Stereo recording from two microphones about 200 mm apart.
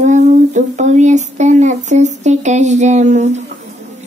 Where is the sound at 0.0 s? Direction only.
35° right (ahead or behind).